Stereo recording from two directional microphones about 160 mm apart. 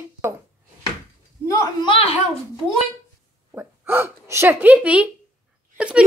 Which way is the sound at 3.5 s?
15° right (ahead or behind).